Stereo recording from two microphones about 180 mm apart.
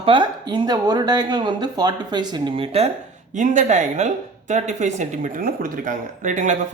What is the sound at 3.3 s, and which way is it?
A woman's voice, 45° right (ahead or behind).